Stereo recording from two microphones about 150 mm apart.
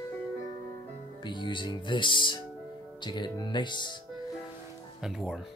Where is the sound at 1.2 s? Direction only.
30° left (ahead or behind).